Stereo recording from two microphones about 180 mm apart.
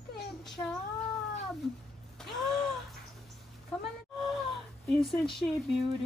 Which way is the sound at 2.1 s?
Centre (ahead or behind).